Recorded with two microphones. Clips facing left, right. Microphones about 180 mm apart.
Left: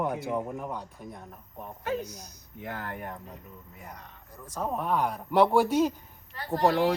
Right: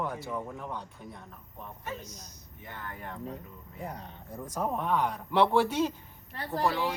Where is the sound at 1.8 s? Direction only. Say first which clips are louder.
Left 9 dB; 70° left (ahead or behind).